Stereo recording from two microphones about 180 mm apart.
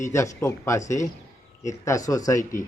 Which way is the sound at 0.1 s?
15° left (ahead or behind).